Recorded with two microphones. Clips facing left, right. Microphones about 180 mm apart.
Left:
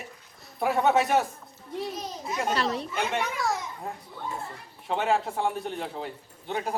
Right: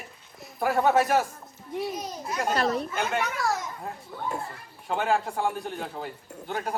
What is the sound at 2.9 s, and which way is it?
Speech, centre (ahead or behind).